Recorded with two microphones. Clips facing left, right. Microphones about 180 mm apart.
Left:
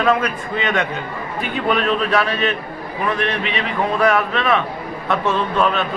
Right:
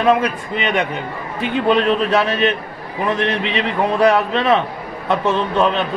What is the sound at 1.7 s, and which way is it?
Speech, 25° right (ahead or behind).